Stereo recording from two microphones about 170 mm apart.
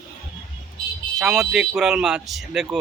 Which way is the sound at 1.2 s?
Centre (ahead or behind).